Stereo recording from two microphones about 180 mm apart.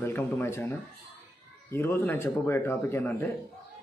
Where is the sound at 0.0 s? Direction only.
15° left (ahead or behind).